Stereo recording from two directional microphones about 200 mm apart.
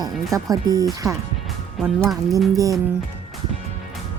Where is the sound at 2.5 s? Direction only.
20° right (ahead or behind).